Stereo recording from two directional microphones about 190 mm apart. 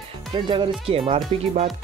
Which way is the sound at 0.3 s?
25° right (ahead or behind).